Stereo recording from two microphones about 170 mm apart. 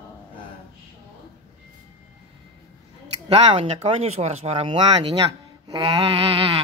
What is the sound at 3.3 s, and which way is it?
Speech, 35° right (ahead or behind).